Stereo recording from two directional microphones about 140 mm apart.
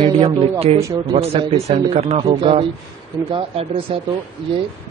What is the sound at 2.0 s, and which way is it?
A man's voice, 50° right (ahead or behind).